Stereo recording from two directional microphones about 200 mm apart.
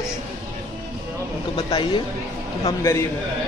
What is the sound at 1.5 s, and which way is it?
Speech, 25° left (ahead or behind).